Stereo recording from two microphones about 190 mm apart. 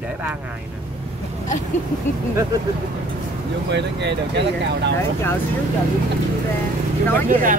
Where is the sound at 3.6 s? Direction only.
65° right (ahead or behind).